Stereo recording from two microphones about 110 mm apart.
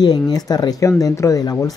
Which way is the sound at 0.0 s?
40° left (ahead or behind).